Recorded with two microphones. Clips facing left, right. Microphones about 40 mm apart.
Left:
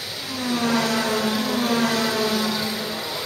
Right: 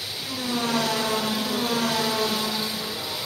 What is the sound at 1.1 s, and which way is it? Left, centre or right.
Vehicle, centre.